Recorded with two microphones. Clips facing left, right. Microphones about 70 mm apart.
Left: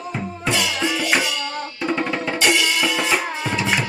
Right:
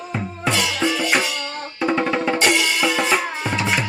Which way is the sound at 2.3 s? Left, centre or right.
Right.